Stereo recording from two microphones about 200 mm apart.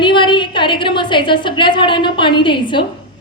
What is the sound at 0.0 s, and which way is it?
A woman's voice, 25° left (ahead or behind).